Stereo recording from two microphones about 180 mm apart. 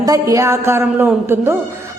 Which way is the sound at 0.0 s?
20° right (ahead or behind).